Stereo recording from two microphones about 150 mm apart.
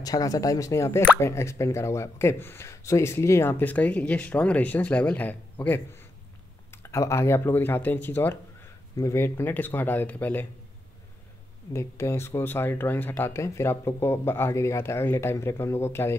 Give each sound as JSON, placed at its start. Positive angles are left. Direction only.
{"t": 0.0, "sound": "speech", "side_deg": 25}
{"t": 11.7, "sound": "speech", "side_deg": 20}